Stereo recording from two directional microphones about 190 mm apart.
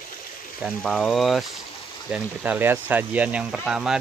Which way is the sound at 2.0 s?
5° right (ahead or behind).